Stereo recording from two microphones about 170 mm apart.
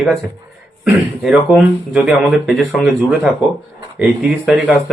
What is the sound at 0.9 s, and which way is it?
Speech, 10° right (ahead or behind).